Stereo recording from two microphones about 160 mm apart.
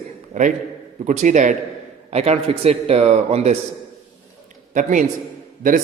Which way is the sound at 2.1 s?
40° right (ahead or behind).